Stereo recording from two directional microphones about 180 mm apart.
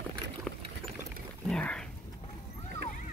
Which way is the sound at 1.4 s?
5° left (ahead or behind).